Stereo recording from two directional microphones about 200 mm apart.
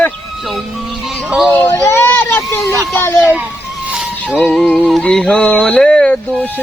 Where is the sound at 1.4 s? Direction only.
10° left (ahead or behind).